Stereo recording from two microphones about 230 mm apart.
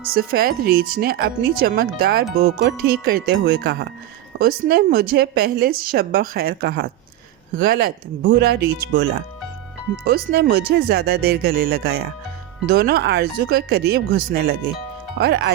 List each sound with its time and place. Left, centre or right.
0.1 s a woman's voice: right